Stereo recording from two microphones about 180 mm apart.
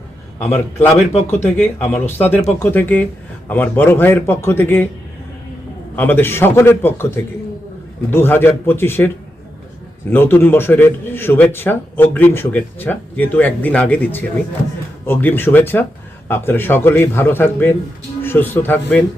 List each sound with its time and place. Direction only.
0.3 s a man's voice: 10° left (ahead or behind)
6.0 s a man's voice: 10° left (ahead or behind)
10.1 s a man's voice: 10° left (ahead or behind)